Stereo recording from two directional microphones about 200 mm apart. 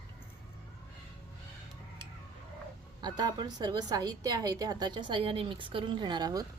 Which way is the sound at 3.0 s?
20° right (ahead or behind).